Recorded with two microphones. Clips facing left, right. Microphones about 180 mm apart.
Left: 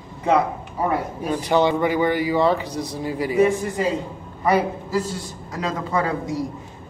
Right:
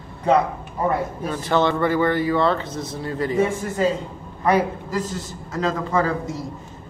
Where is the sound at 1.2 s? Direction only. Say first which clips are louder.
Left 2 dB; 15° left (ahead or behind).